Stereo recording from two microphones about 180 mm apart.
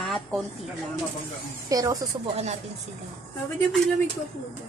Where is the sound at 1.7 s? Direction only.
20° right (ahead or behind).